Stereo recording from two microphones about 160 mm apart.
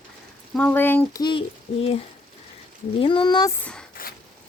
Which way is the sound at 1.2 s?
30° left (ahead or behind).